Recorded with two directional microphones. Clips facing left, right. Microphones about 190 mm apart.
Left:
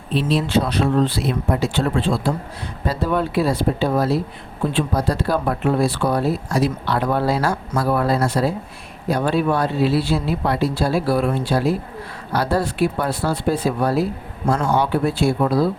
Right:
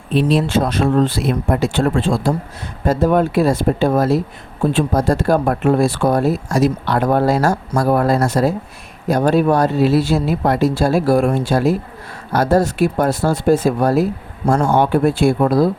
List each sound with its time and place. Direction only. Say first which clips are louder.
0.1 s speech: right 4 dB; 50° right (ahead or behind)